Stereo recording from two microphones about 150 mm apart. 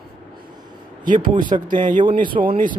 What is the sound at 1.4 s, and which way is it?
Speech, 30° right (ahead or behind).